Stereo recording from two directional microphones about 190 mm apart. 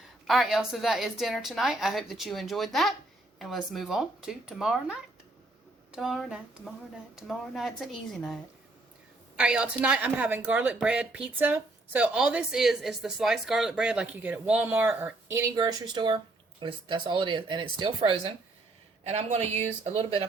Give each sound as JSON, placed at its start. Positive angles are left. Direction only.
{"t": 0.3, "sound": "a woman's voice", "side_deg": 0}